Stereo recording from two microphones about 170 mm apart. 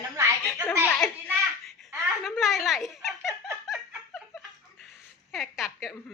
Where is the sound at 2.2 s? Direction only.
Centre (ahead or behind).